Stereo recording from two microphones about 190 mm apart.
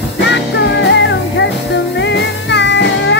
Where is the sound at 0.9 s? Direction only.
70° left (ahead or behind).